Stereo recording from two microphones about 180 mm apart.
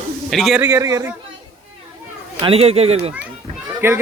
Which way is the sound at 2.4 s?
30° right (ahead or behind).